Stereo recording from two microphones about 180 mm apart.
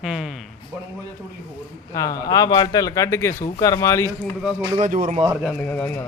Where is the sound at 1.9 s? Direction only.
20° left (ahead or behind).